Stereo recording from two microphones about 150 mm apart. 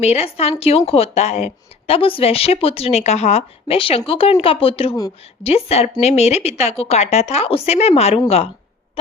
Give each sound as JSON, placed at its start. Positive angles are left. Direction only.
{"t": 0.0, "sound": "a woman's voice", "side_deg": 45}